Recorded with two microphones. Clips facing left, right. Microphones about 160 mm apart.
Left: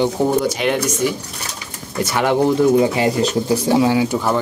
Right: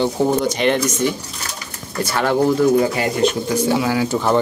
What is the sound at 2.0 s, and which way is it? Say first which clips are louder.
Speech: left 1 dB; 20° left (ahead or behind).